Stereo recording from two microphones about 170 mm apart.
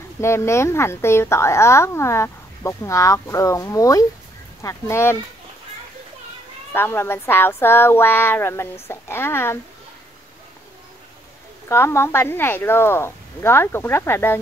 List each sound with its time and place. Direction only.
0.2 s speech: 15° left (ahead or behind)
6.7 s speech: 15° left (ahead or behind)
11.7 s speech: 15° left (ahead or behind)